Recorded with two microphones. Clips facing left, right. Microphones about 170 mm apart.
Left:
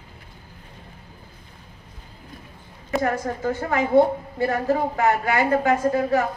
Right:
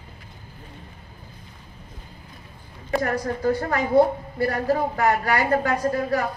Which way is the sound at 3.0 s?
40° right (ahead or behind).